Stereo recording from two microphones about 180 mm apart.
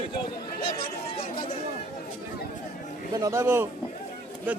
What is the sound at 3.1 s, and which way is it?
Speech, 20° right (ahead or behind).